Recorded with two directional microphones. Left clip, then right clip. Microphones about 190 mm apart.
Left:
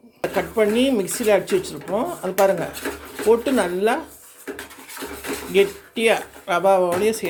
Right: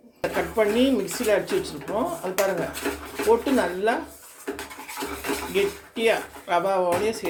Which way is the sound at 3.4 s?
35° left (ahead or behind).